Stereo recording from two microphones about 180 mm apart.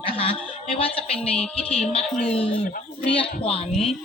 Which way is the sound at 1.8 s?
30° left (ahead or behind).